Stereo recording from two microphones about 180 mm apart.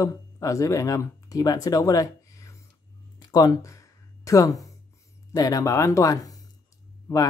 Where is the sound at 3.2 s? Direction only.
20° left (ahead or behind).